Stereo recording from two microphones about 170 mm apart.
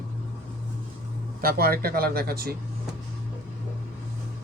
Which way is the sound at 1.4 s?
60° right (ahead or behind).